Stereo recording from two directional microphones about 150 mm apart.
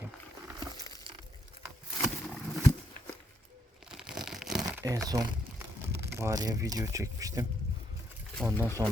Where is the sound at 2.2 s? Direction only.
10° left (ahead or behind).